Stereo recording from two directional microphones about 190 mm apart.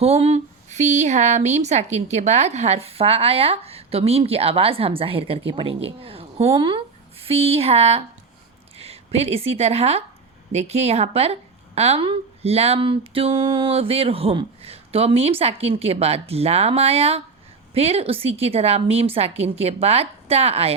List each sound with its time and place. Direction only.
0.0 s speech: 35° right (ahead or behind)